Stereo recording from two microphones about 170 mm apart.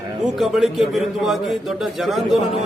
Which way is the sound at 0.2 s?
Centre (ahead or behind).